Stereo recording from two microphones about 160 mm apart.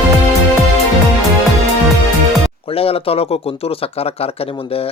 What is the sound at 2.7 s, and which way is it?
Speech, 35° left (ahead or behind).